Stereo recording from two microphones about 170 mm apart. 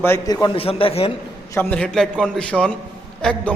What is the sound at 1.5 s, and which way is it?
A man's voice, 5° left (ahead or behind).